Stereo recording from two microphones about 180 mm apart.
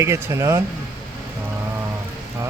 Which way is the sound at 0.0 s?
15° right (ahead or behind).